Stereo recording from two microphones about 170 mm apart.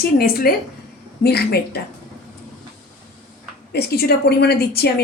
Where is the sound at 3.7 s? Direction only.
70° left (ahead or behind).